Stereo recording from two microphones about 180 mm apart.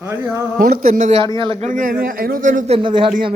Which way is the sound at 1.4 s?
30° right (ahead or behind).